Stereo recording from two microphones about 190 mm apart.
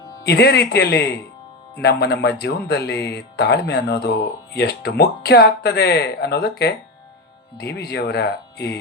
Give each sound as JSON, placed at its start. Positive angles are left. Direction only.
{"t": 0.3, "sound": "speech", "side_deg": 60}